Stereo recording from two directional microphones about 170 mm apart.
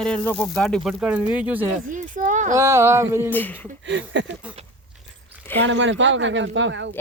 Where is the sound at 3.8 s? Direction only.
90° right.